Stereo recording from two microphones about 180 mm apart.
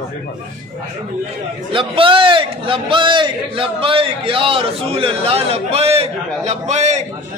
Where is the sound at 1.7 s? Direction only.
30° right (ahead or behind).